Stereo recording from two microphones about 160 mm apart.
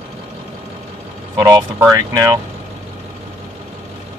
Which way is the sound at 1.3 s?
25° right (ahead or behind).